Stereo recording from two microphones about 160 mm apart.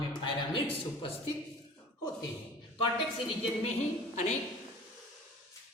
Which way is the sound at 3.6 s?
45° left (ahead or behind).